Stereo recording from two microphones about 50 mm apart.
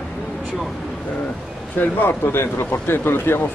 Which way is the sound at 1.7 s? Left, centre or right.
Left.